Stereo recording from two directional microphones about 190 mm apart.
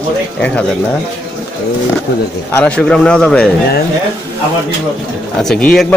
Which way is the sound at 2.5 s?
5° left (ahead or behind).